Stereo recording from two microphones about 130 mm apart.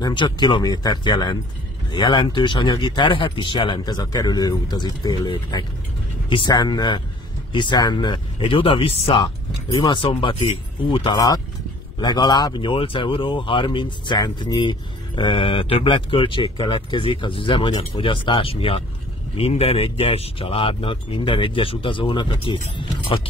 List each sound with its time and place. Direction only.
0.0 s speech: 35° left (ahead or behind)
9.2 s speech: 35° left (ahead or behind)